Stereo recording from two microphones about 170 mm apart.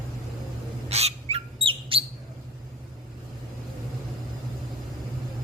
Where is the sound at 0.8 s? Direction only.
40° right (ahead or behind).